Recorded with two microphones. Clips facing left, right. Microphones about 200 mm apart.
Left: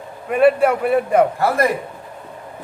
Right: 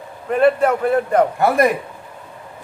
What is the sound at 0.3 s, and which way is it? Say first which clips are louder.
Speech: left 1 dB; 10° left (ahead or behind).